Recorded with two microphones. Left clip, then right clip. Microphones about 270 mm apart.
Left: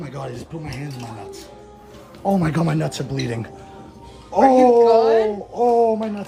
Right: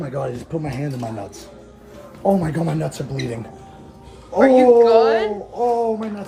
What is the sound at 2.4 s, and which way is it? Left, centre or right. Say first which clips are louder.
Speech: left 2 dB; left.